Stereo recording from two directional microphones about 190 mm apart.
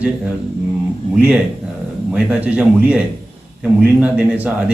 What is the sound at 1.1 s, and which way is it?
A man's voice, 5° right (ahead or behind).